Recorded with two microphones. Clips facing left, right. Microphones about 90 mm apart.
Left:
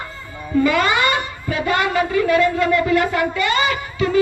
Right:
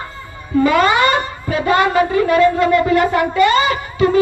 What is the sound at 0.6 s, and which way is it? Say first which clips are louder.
A woman's voice: right 5 dB; 35° right (ahead or behind).